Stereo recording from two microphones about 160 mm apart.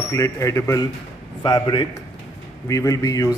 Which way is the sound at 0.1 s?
20° left (ahead or behind).